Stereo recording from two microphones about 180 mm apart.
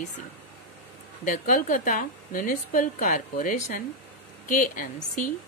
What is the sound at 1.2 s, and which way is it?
A woman's voice, 45° left (ahead or behind).